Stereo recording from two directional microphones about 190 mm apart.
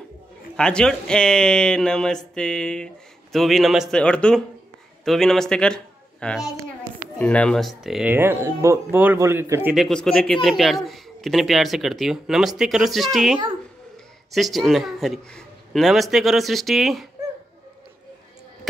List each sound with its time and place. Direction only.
0.6 s a man's voice: 5° left (ahead or behind)
9.8 s speech: 5° left (ahead or behind)